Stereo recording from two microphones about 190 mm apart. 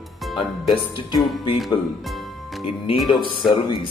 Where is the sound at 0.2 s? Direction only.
Centre (ahead or behind).